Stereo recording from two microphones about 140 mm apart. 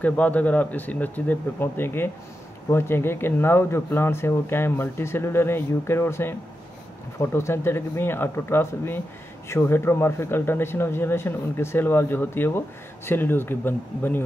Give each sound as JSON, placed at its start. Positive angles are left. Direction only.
{"t": 0.0, "sound": "speech", "side_deg": 10}